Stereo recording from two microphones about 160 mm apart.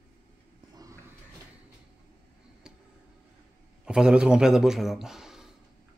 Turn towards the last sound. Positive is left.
turn(degrees=-5)  # may be behind; listen again after turning